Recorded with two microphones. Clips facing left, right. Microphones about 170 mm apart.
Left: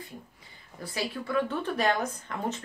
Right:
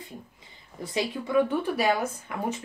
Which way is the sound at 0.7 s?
20° right (ahead or behind).